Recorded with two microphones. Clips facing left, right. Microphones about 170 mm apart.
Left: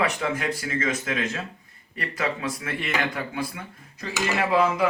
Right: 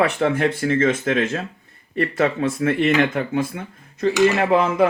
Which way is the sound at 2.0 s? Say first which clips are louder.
Right 9 dB; 50° right (ahead or behind).